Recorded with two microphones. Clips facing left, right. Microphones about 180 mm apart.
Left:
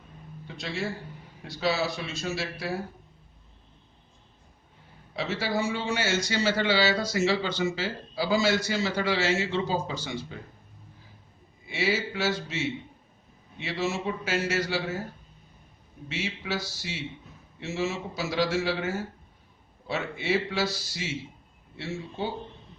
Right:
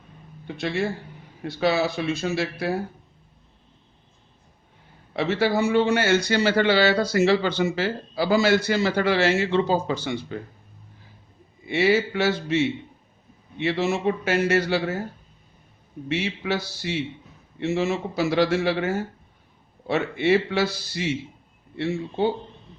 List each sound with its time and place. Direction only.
0.4 s a man's voice: 60° right (ahead or behind)
5.1 s a man's voice: 60° right (ahead or behind)
11.7 s a man's voice: 60° right (ahead or behind)
16.0 s a man's voice: 60° right (ahead or behind)